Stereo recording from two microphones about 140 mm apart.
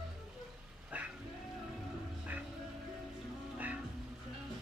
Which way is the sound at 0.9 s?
10° right (ahead or behind).